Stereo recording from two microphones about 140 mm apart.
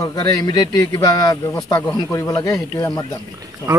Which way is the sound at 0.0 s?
30° left (ahead or behind).